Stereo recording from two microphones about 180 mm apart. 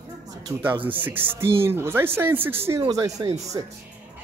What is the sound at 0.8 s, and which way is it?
Speech, 10° right (ahead or behind).